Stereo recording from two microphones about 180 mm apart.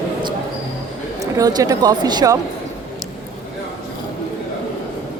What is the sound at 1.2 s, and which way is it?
Speech, 20° right (ahead or behind).